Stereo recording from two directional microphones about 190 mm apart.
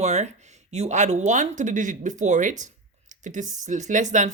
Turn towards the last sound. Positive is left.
turn(degrees=-40)  # may be behind; listen again after turning